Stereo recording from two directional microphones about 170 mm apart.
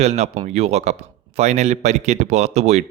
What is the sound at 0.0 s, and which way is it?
Speech, 40° right (ahead or behind).